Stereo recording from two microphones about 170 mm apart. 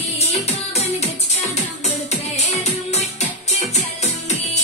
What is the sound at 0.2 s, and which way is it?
Music, 40° left (ahead or behind).